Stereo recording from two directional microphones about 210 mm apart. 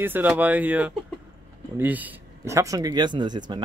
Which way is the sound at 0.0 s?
10° right (ahead or behind).